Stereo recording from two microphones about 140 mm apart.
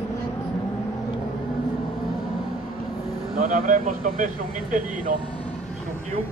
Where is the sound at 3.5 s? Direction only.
70° right (ahead or behind).